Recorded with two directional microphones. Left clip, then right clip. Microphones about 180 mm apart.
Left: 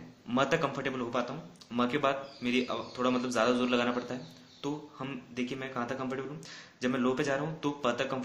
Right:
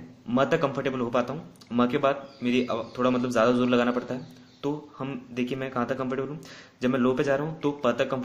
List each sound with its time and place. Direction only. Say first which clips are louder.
0.3 s speech: right 5 dB; 25° right (ahead or behind)